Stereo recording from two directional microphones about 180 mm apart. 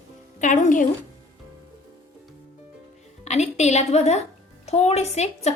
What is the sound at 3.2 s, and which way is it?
Speech, 40° left (ahead or behind).